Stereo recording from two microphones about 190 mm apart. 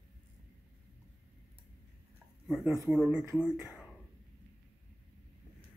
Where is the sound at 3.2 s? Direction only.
15° right (ahead or behind).